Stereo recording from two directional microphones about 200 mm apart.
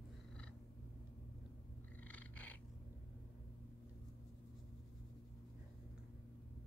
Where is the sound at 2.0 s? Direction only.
5° left (ahead or behind).